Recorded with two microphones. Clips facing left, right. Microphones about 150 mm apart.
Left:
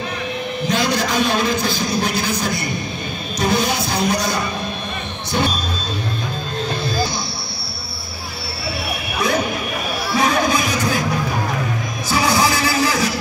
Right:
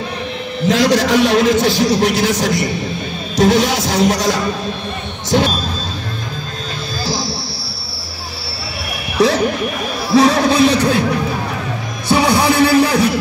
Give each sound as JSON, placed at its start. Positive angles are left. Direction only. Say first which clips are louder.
{"t": 0.7, "sound": "a man's voice", "louder": "right 7 dB", "side_deg": -90}
{"t": 3.3, "sound": "music", "louder": "right 6 dB", "side_deg": -90}
{"t": 10.1, "sound": "a sound", "louder": "right 7 dB", "side_deg": -80}
{"t": 12.1, "sound": "music", "louder": "right 5 dB", "side_deg": -60}